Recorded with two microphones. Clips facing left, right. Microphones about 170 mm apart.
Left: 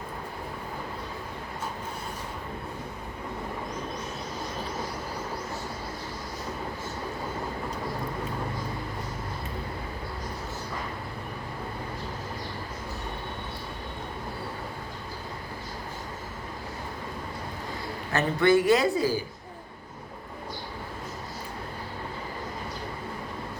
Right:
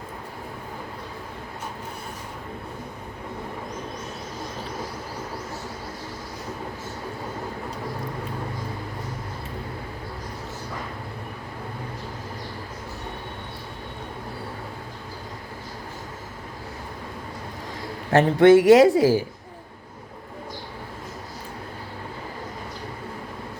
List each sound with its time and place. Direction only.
18.1 s speech: 90° right